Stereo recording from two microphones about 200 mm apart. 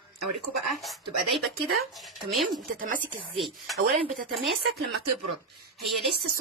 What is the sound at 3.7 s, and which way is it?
Speech, 45° right (ahead or behind).